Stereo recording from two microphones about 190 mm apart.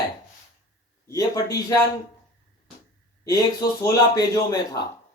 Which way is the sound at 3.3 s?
20° left (ahead or behind).